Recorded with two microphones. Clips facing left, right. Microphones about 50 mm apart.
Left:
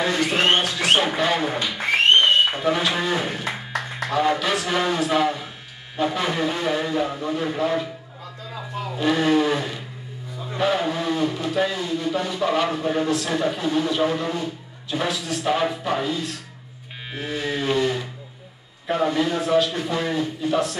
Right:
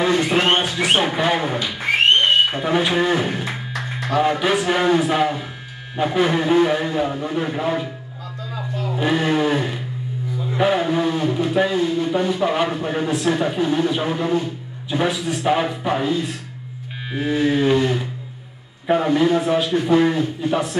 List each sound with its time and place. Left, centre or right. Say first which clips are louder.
0.2 s a sound: right 2 dB; right
2.5 s speech: right 3 dB; centre
8.9 s speech: even; centre